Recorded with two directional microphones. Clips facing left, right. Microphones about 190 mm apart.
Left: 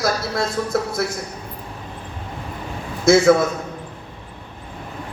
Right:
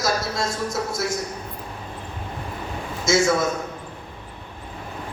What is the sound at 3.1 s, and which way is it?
Speech, 60° left (ahead or behind).